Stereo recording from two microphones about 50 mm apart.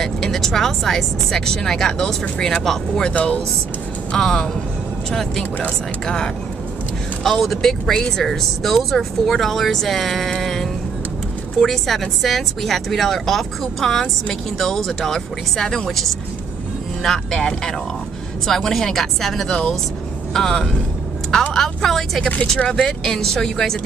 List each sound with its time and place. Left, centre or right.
0.0 s speech: centre
3.2 s speech: left
4.1 s speech: centre
6.0 s speech: centre
19.5 s speech: centre
22.3 s speech: left
22.8 s speech: centre